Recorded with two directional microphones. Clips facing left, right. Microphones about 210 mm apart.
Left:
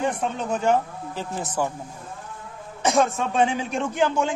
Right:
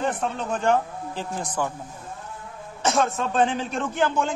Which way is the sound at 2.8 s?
15° left (ahead or behind).